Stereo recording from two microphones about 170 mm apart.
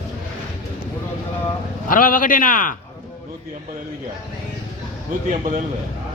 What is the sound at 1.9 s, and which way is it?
Speech, 55° left (ahead or behind).